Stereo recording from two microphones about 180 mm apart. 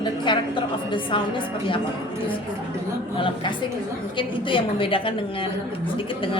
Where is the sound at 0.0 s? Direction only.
25° left (ahead or behind).